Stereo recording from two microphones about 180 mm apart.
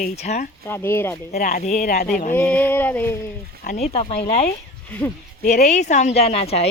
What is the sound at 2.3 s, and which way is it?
Speech, 10° left (ahead or behind).